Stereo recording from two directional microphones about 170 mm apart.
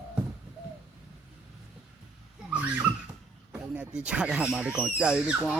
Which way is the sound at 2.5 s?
10° right (ahead or behind).